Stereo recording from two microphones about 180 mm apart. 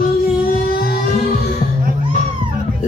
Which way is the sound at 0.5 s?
55° left (ahead or behind).